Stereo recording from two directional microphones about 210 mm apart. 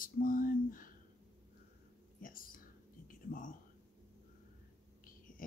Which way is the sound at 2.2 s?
40° left (ahead or behind).